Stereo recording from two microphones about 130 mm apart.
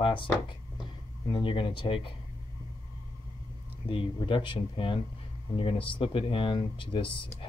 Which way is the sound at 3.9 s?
40° left (ahead or behind).